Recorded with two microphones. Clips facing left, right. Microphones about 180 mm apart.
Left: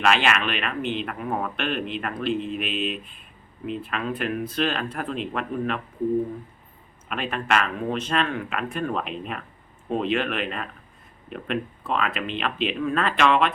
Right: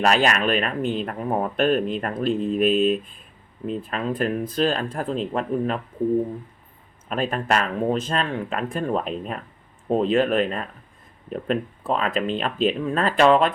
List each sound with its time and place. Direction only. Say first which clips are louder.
0.0 s speech: right 3 dB; 40° right (ahead or behind)
7.1 s speech: right 2 dB; 35° right (ahead or behind)